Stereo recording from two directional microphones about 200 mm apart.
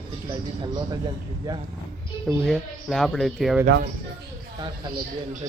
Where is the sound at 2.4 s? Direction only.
Centre (ahead or behind).